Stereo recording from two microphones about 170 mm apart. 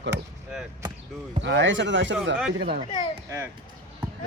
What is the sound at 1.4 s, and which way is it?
Speech, 90° right.